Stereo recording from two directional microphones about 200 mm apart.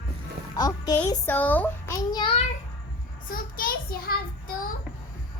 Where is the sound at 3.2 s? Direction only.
45° left (ahead or behind).